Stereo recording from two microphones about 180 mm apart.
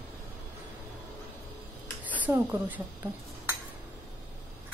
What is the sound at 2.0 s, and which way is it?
Speech, 10° right (ahead or behind).